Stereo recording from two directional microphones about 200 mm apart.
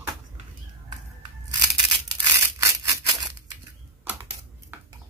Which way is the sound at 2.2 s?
15° right (ahead or behind).